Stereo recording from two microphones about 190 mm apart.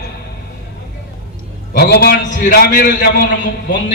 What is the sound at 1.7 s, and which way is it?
A man's voice, 55° left (ahead or behind).